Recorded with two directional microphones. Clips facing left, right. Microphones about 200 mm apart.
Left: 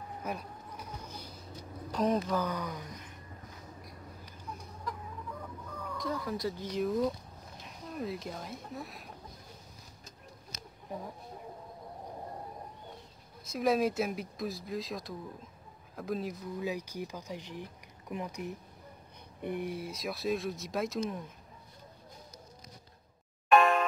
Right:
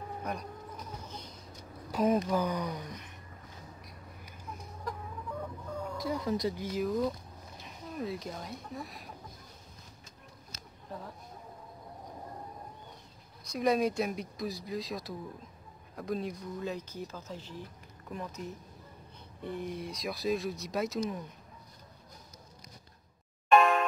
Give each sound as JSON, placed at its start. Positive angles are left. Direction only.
{"t": 0.2, "sound": "a sound", "side_deg": 5}
{"t": 1.9, "sound": "speech", "side_deg": -5}
{"t": 6.1, "sound": "speech", "side_deg": -20}
{"t": 10.5, "sound": "a sound", "side_deg": 15}
{"t": 13.4, "sound": "speech", "side_deg": 0}
{"t": 23.5, "sound": "music", "side_deg": 0}